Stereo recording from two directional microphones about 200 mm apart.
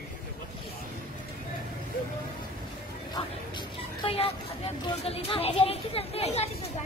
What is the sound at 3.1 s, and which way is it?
Speech, 25° left (ahead or behind).